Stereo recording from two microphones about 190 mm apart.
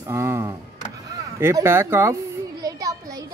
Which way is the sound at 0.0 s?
15° right (ahead or behind).